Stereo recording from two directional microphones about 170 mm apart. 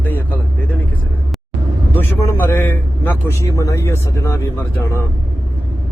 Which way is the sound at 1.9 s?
10° left (ahead or behind).